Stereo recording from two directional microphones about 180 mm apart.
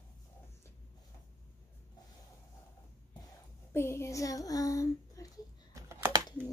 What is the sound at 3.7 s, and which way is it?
Speech, 15° left (ahead or behind).